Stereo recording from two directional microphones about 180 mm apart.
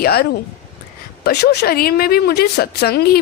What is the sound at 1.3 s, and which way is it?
Speech, 60° left (ahead or behind).